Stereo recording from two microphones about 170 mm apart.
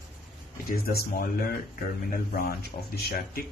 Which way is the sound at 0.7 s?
60° left (ahead or behind).